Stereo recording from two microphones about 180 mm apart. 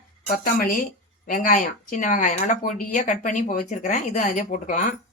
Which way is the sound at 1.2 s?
45° left (ahead or behind).